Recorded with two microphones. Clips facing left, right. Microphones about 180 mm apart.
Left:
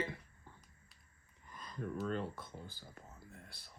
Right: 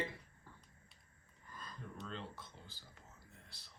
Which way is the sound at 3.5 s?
55° left (ahead or behind).